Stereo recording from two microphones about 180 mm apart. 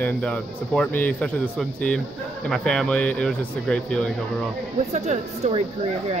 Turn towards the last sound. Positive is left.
turn(degrees=-40)  # may be behind; listen again after turning